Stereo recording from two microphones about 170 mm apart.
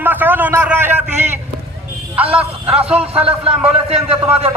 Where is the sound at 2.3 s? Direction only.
35° right (ahead or behind).